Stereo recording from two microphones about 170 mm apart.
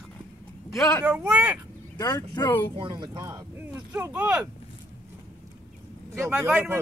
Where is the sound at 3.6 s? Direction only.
10° right (ahead or behind).